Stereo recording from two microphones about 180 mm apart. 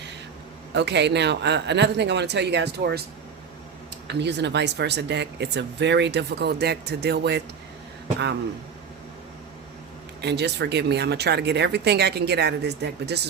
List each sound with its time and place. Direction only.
0.7 s speech: 70° right (ahead or behind)
4.0 s speech: 70° right (ahead or behind)
10.2 s speech: 70° right (ahead or behind)